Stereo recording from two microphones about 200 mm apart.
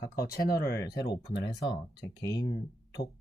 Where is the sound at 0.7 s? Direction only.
15° left (ahead or behind).